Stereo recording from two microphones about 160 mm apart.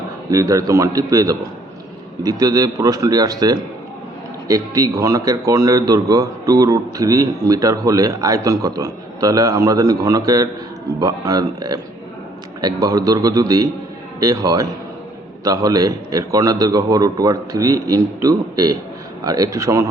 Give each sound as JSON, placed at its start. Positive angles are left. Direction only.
{"t": 0.3, "sound": "a man's voice", "side_deg": -20}